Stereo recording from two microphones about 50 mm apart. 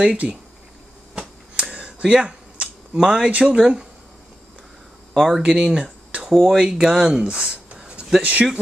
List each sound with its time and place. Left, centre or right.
0.0 s speech: right
1.5 s a sound: centre
3.3 s speech: right
3.5 s speech: centre
5.1 s speech: centre
5.4 s speech: centre
7.5 s a sound: right
8.2 s speech: right